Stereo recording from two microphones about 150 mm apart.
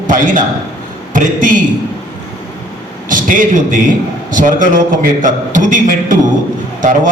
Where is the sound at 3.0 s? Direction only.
65° right (ahead or behind).